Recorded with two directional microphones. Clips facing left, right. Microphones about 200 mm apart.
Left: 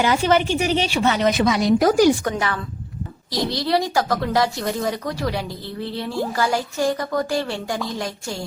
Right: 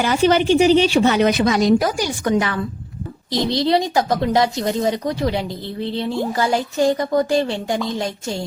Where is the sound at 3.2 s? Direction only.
25° right (ahead or behind).